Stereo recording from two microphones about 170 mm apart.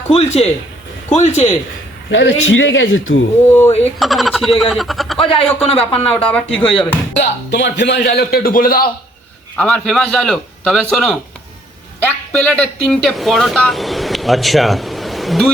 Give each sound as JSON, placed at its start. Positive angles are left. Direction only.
{"t": 0.1, "sound": "speech", "side_deg": 35}
{"t": 2.0, "sound": "a man's voice", "side_deg": 90}
{"t": 3.8, "sound": "a man's voice", "side_deg": 0}
{"t": 5.2, "sound": "speech", "side_deg": 30}
{"t": 6.3, "sound": "speech", "side_deg": 10}
{"t": 7.5, "sound": "a man's voice", "side_deg": 90}
{"t": 9.6, "sound": "a man's voice", "side_deg": 5}